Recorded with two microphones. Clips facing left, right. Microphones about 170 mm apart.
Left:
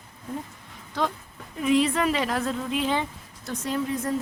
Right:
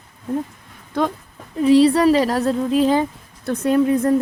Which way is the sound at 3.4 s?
60° right (ahead or behind).